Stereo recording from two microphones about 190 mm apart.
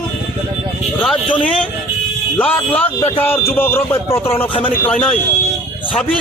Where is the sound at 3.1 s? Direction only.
10° left (ahead or behind).